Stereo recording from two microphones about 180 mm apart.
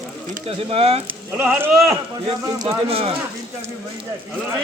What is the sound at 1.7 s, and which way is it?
Speech, centre (ahead or behind).